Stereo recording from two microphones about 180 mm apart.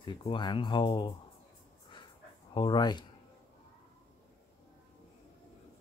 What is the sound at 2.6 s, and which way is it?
Speech, 25° left (ahead or behind).